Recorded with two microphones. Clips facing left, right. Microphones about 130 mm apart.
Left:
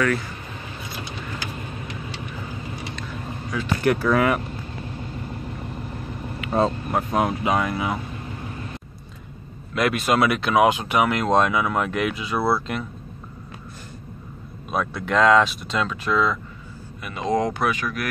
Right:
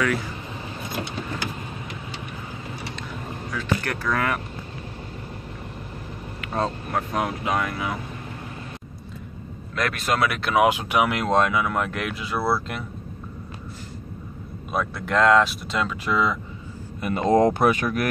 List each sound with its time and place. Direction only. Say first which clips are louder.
3.5 s speech: left 6 dB; 5° left (ahead or behind)
6.4 s speech: left 5 dB; 5° left (ahead or behind)
9.8 s speech: left 4 dB; 5° left (ahead or behind)
14.7 s speech: left 1 dB; centre (ahead or behind)
17.0 s speech: right 5 dB; 45° right (ahead or behind)